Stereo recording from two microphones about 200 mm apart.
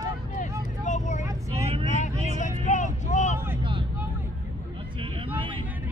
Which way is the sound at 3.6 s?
25° right (ahead or behind).